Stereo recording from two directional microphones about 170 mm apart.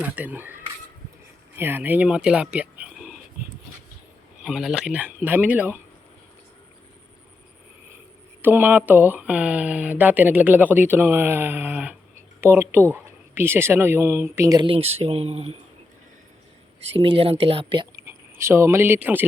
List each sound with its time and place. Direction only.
0.0 s speech: 10° right (ahead or behind)
4.4 s speech: 5° right (ahead or behind)
8.4 s speech: 10° right (ahead or behind); by 15.5 s 40° right (ahead or behind)
17.0 s speech: 35° right (ahead or behind)
17.9 s speech: 15° right (ahead or behind)